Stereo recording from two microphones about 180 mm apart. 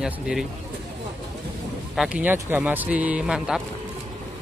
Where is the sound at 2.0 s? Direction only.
5° right (ahead or behind).